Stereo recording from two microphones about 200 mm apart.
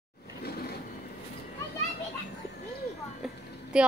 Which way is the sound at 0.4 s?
50° left (ahead or behind).